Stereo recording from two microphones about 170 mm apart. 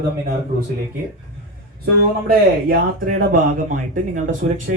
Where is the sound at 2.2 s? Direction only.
55° right (ahead or behind).